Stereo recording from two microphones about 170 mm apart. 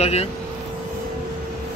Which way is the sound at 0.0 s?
40° left (ahead or behind).